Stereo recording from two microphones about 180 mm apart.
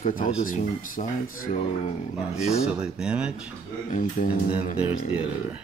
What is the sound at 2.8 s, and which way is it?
Speech, 5° right (ahead or behind).